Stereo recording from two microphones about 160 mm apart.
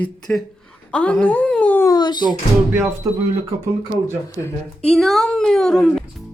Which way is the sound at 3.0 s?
20° right (ahead or behind).